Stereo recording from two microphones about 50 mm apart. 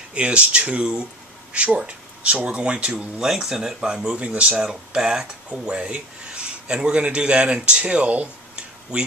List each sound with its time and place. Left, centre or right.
0.1 s speech: right
5.5 s a sound: right
6.7 s speech: centre